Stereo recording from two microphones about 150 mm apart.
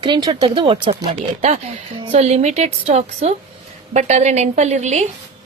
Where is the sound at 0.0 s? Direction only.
30° right (ahead or behind).